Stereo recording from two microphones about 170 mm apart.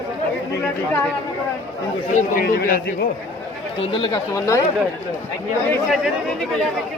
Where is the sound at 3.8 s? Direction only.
30° left (ahead or behind).